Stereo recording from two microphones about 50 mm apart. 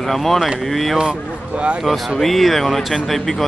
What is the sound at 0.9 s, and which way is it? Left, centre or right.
Speech, right.